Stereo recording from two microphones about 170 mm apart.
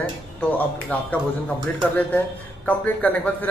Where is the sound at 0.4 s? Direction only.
10° left (ahead or behind).